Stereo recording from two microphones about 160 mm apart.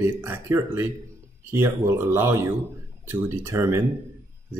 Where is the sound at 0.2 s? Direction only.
15° right (ahead or behind).